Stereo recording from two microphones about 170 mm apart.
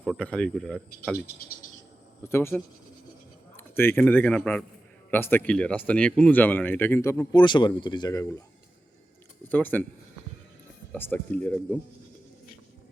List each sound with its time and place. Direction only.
0.0 s speech: 5° left (ahead or behind)
2.2 s speech: 15° left (ahead or behind)
3.6 s speech: 10° left (ahead or behind)
7.4 s speech: 25° left (ahead or behind)
9.5 s speech: 10° left (ahead or behind)
10.9 s speech: 10° left (ahead or behind)